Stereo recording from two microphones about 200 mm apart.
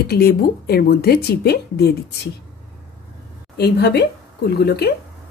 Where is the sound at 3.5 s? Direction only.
55° left (ahead or behind).